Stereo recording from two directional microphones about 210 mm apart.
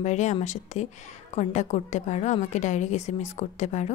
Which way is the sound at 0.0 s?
35° left (ahead or behind).